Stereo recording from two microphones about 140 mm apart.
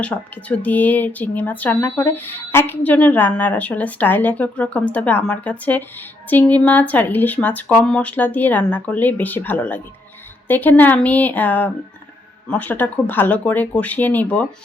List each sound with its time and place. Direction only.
0.0 s a woman's voice: 10° left (ahead or behind)